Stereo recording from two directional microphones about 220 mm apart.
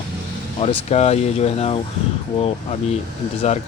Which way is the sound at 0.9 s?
30° left (ahead or behind).